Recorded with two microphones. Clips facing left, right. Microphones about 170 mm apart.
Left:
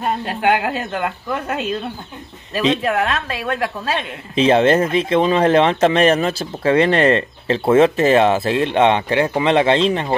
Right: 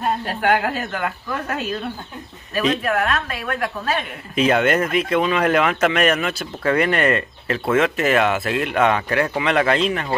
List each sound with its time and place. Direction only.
0.9 s a woman's voice: 20° left (ahead or behind)